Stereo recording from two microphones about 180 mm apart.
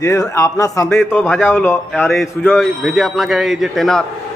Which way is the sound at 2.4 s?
Centre (ahead or behind).